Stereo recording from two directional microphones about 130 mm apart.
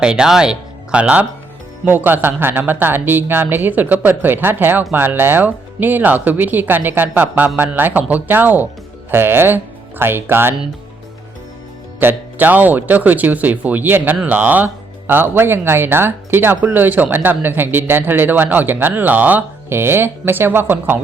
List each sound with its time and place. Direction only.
0.0 s speech: 5° right (ahead or behind)
11.9 s speech: 15° right (ahead or behind)